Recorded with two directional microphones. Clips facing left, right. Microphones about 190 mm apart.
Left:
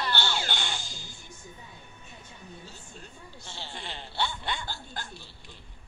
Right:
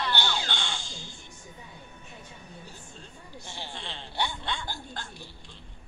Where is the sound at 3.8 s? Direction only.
5° left (ahead or behind).